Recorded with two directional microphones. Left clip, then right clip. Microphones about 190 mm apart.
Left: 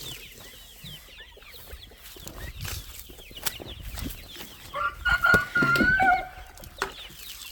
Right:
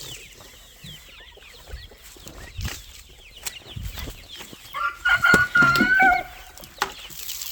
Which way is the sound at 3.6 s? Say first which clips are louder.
Right 2 dB; 35° left (ahead or behind).